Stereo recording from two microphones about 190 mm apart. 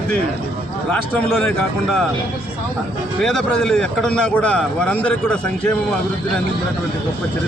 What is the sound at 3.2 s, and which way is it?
A man's voice, 5° left (ahead or behind).